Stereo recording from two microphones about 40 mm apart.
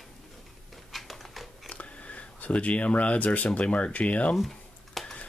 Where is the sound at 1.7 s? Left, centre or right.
Left.